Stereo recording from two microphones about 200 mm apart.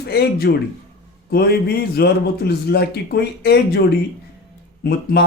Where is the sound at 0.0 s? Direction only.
55° left (ahead or behind).